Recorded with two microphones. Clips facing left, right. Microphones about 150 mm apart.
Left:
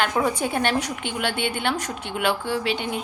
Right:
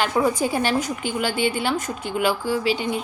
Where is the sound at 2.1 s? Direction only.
5° right (ahead or behind).